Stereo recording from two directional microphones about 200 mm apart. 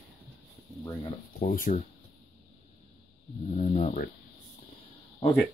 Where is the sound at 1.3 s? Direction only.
45° left (ahead or behind).